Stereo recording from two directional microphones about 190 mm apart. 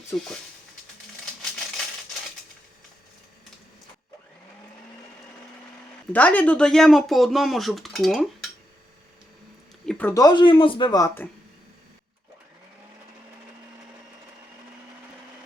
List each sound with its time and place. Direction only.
0.1 s speech: 10° left (ahead or behind)
6.1 s speech: 10° left (ahead or behind)
9.8 s a sound: 5° left (ahead or behind)
10.2 s a man's voice: 25° left (ahead or behind)